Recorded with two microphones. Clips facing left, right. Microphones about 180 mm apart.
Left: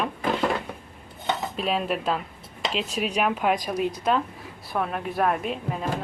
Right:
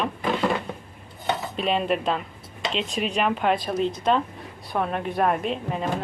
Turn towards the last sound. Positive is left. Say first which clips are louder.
# right 2 dB
turn(degrees=0)  # may be behind; listen again after turning